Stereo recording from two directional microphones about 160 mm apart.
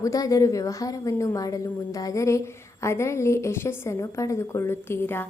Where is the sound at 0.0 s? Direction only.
20° left (ahead or behind).